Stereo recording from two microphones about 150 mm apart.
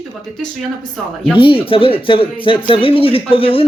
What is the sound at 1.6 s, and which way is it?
Speech, 35° left (ahead or behind).